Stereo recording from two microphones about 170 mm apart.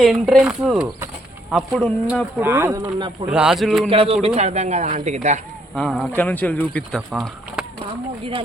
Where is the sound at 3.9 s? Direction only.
35° right (ahead or behind).